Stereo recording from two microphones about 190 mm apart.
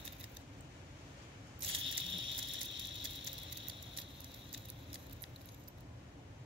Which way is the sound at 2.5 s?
75° right (ahead or behind).